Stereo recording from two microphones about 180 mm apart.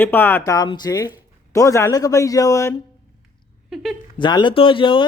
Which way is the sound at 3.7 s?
Centre (ahead or behind).